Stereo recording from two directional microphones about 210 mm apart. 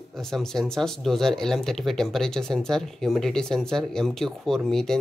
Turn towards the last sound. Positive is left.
turn(degrees=0)  # may be behind; listen again after turning